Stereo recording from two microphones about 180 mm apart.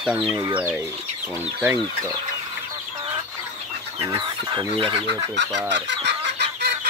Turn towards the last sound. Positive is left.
turn(degrees=-65)  # may be behind; listen again after turning